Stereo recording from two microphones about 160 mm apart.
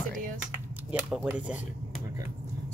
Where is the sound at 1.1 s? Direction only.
10° right (ahead or behind).